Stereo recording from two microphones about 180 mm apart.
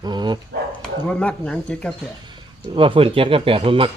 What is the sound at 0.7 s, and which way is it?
Speech, 5° left (ahead or behind).